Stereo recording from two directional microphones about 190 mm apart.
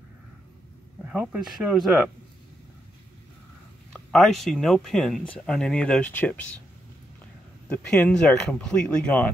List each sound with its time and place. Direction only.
1.0 s speech: 5° right (ahead or behind)
3.9 s speech: centre (ahead or behind)
7.7 s speech: 5° left (ahead or behind)